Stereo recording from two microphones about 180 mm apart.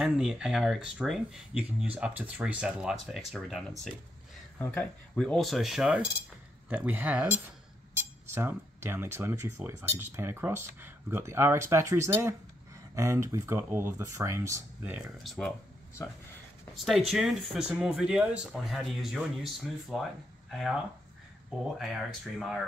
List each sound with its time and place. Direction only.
0.0 s speech: 5° right (ahead or behind)
15.3 s speech: 10° left (ahead or behind)
17.1 s speech: centre (ahead or behind)